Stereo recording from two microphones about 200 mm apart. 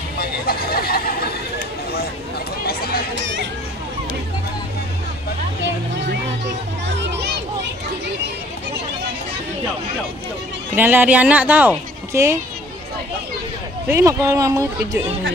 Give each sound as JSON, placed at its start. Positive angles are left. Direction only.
{"t": 0.2, "sound": "a sound", "side_deg": 50}
{"t": 6.4, "sound": "music", "side_deg": -60}
{"t": 10.7, "sound": "speech", "side_deg": -10}
{"t": 13.8, "sound": "speech", "side_deg": -15}